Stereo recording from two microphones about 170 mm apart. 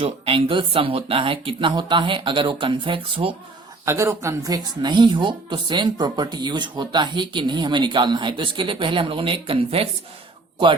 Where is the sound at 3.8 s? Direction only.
15° right (ahead or behind).